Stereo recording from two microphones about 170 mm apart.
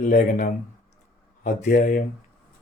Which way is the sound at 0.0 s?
50° left (ahead or behind).